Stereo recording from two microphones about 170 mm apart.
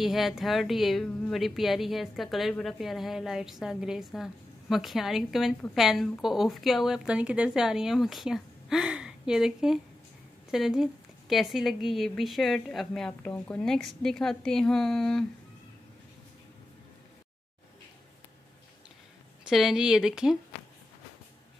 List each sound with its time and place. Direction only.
0.0 s a woman's voice: centre (ahead or behind)
19.4 s a woman's voice: 5° right (ahead or behind)